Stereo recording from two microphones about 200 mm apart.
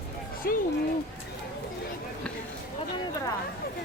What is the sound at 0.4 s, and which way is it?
Speech, 50° left (ahead or behind).